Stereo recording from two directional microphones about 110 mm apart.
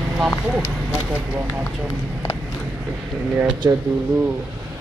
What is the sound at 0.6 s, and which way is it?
Speech, 15° right (ahead or behind).